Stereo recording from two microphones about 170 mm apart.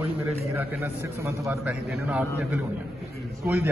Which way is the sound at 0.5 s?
10° right (ahead or behind).